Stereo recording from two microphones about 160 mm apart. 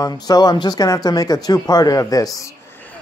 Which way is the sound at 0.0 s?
25° left (ahead or behind).